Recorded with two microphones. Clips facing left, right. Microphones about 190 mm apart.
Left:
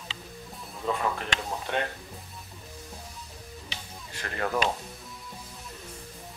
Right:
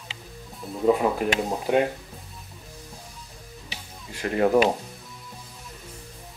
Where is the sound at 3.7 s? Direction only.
10° right (ahead or behind).